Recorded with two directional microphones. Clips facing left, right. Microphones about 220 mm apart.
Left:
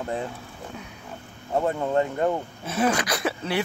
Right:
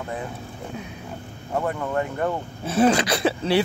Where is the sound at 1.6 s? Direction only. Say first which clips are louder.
Left 2 dB; 25° left (ahead or behind).